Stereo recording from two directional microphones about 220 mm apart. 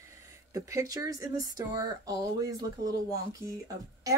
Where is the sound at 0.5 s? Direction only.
15° right (ahead or behind).